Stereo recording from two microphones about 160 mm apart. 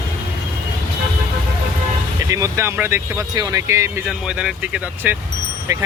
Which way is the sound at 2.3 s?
20° right (ahead or behind).